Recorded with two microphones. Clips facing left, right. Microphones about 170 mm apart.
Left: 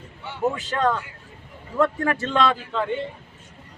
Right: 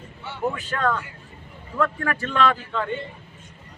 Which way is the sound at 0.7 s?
20° left (ahead or behind).